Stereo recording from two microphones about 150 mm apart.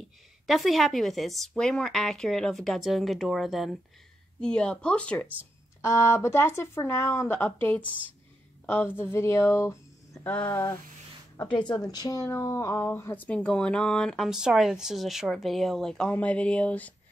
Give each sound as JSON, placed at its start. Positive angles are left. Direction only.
{"t": 0.0, "sound": "a woman's voice", "side_deg": 0}
{"t": 5.8, "sound": "a woman's voice", "side_deg": 20}
{"t": 11.5, "sound": "a woman's voice", "side_deg": 25}